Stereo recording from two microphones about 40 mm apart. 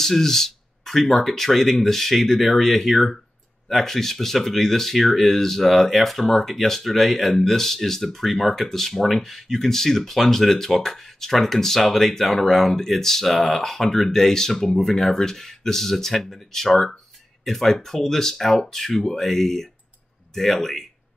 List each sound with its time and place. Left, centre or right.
0.0 s speech: centre